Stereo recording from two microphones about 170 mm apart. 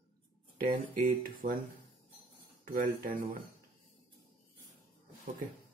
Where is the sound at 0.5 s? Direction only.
55° right (ahead or behind).